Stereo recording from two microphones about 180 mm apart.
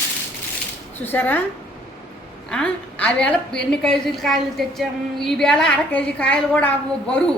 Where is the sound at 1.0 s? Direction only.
10° left (ahead or behind).